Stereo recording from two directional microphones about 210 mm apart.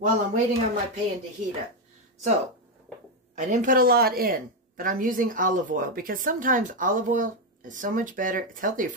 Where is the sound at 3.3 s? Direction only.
35° right (ahead or behind).